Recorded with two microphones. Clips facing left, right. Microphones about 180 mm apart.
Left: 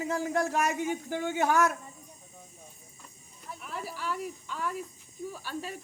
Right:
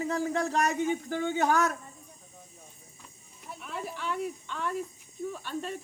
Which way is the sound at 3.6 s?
5° left (ahead or behind).